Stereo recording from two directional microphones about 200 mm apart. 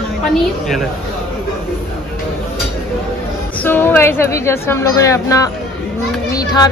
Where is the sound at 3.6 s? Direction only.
10° left (ahead or behind).